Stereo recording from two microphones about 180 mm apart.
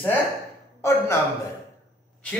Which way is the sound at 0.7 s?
15° left (ahead or behind).